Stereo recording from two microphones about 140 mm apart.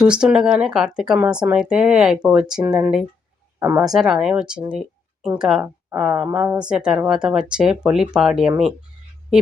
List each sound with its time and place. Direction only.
0.0 s speech: 5° right (ahead or behind)
6.2 s a woman's voice: 15° right (ahead or behind)
6.7 s speech: 5° right (ahead or behind)